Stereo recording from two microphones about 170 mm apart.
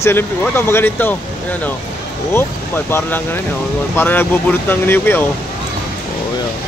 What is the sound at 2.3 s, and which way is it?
Speech, 15° left (ahead or behind).